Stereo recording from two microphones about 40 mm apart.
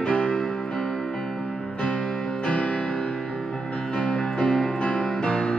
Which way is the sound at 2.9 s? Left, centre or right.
Centre.